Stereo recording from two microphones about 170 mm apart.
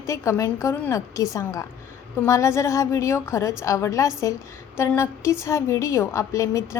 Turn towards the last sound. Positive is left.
turn(degrees=15)  # may be behind; listen again after turning